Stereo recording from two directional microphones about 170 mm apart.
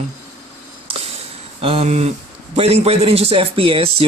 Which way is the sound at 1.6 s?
35° right (ahead or behind).